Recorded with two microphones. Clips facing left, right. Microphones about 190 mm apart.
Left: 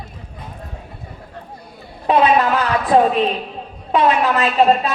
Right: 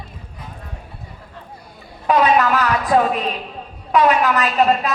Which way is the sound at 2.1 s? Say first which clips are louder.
Left 1 dB; 30° left (ahead or behind).